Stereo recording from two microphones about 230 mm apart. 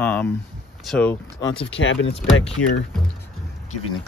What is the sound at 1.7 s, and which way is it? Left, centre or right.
Speech, left.